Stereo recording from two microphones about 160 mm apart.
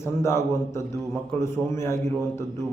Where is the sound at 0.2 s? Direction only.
15° left (ahead or behind).